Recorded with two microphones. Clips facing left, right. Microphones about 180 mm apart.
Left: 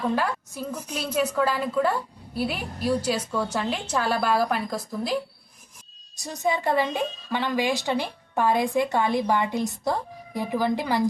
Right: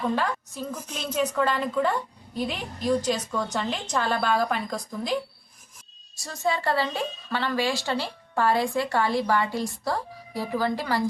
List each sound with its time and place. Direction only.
0.0 s a woman's voice: 10° left (ahead or behind)
6.1 s speech: 20° left (ahead or behind)